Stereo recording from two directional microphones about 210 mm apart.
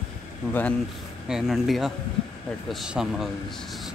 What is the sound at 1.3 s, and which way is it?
Speech, centre (ahead or behind).